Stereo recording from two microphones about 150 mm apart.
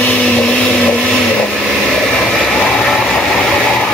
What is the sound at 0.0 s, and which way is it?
Vehicle, 10° left (ahead or behind).